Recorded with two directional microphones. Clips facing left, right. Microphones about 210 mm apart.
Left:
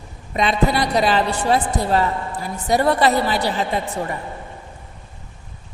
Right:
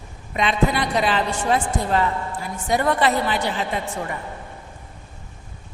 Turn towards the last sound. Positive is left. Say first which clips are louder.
# left 3 dB
turn(degrees=35)  # may be behind; listen again after turning